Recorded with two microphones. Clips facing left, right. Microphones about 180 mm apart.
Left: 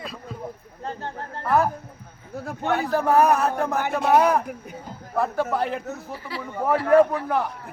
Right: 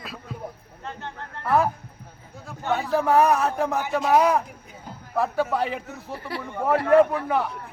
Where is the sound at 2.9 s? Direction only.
Centre (ahead or behind).